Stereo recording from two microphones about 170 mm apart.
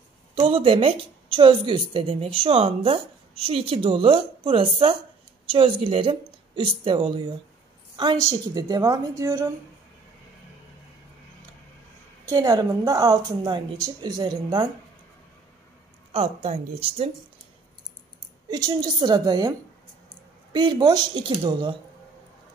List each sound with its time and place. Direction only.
0.3 s a woman's voice: 30° right (ahead or behind)
7.9 s a sound: 30° right (ahead or behind)
8.2 s a woman's voice: 20° right (ahead or behind)
12.3 s a woman's voice: 20° right (ahead or behind)
16.1 s a woman's voice: 35° right (ahead or behind)
18.5 s a woman's voice: 25° right (ahead or behind)
20.5 s a woman's voice: 25° right (ahead or behind)